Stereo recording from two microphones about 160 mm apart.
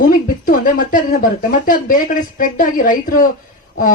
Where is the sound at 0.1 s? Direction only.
60° left (ahead or behind).